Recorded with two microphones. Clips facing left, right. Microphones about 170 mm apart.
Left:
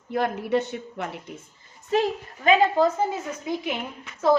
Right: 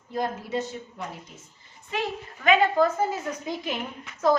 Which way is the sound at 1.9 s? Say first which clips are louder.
Left 7 dB; 35° left (ahead or behind).